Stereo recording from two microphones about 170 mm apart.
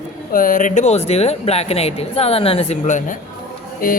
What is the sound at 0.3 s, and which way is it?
Speech, 50° left (ahead or behind).